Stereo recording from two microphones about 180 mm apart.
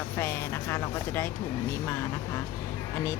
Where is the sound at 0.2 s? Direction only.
10° left (ahead or behind).